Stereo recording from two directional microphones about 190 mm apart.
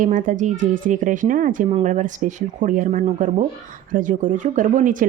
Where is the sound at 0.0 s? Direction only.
45° right (ahead or behind).